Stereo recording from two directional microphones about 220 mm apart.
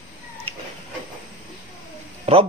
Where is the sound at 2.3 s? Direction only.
25° right (ahead or behind).